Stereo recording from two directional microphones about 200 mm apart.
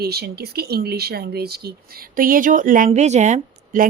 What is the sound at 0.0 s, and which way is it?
A woman's voice, 50° right (ahead or behind).